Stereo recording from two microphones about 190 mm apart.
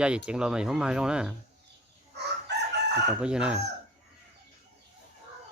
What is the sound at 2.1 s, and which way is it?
Chicken, 65° right (ahead or behind).